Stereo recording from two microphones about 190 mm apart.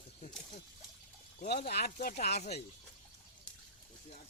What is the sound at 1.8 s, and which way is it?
Speech, 45° left (ahead or behind).